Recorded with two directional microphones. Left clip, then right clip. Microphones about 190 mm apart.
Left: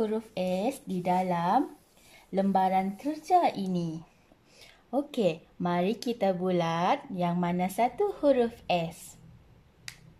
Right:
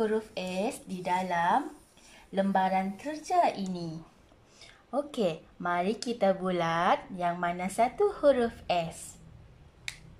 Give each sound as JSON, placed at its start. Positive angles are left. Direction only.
{"t": 0.0, "sound": "speech", "side_deg": 15}